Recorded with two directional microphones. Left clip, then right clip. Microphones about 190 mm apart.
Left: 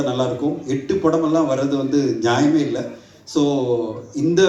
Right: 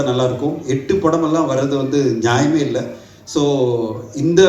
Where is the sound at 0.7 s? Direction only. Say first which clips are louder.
Right 3 dB; 25° right (ahead or behind).